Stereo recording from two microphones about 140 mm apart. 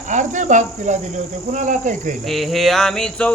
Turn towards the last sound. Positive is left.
turn(degrees=5)  # may be behind; listen again after turning